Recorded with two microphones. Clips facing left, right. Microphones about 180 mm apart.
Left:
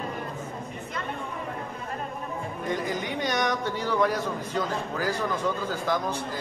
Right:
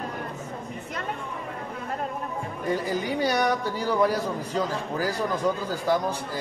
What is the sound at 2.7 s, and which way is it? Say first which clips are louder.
A man's voice: right 3 dB; 35° right (ahead or behind).